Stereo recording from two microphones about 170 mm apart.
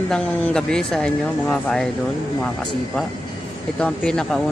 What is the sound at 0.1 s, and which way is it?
Speech, 5° left (ahead or behind).